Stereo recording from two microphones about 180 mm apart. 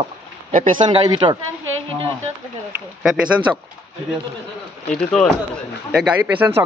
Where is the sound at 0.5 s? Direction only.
45° right (ahead or behind).